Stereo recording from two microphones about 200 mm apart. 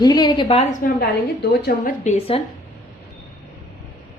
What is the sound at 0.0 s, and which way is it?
Speech, 20° left (ahead or behind).